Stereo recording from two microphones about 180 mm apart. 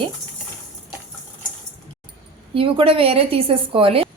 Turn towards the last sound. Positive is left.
turn(degrees=-30)  # may be behind; listen again after turning